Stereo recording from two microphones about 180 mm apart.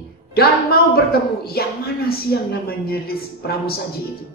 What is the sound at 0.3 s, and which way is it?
Speech, 60° left (ahead or behind).